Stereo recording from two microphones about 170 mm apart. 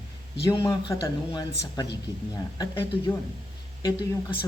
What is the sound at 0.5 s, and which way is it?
Speech, 30° left (ahead or behind).